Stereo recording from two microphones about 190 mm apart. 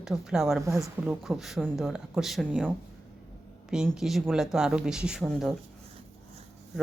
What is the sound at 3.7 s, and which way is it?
Speech, 5° right (ahead or behind).